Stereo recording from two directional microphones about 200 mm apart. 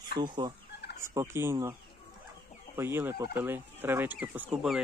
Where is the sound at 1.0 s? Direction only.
15° right (ahead or behind).